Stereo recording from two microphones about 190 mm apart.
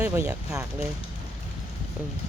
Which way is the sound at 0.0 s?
10° right (ahead or behind).